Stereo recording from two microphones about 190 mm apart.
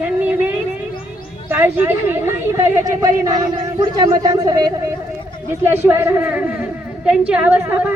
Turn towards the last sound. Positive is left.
turn(degrees=-10)  # may be behind; listen again after turning